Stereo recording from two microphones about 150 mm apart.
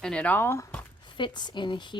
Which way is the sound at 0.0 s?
5° left (ahead or behind).